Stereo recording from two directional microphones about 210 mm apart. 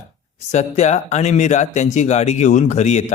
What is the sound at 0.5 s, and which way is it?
Speech, 30° left (ahead or behind).